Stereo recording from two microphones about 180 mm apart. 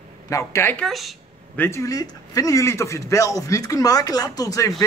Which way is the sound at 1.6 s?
15° left (ahead or behind).